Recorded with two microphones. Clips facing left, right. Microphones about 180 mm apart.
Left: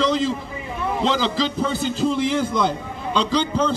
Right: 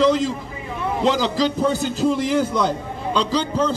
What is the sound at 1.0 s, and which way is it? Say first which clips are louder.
Speech: right 2 dB; 10° right (ahead or behind).